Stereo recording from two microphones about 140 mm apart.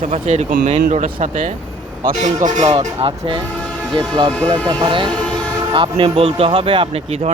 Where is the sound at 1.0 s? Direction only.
70° right (ahead or behind).